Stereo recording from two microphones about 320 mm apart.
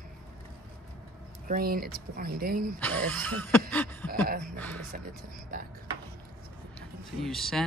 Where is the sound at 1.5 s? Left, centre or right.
Right.